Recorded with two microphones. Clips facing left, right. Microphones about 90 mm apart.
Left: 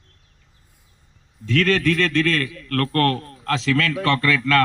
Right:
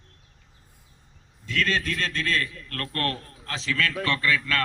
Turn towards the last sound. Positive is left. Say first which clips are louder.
# left 6 dB
turn(degrees=90)